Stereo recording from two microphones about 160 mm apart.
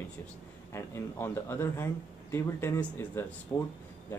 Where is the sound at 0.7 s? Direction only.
15° left (ahead or behind).